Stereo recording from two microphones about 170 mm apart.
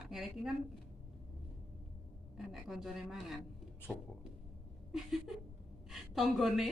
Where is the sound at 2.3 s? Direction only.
Centre (ahead or behind).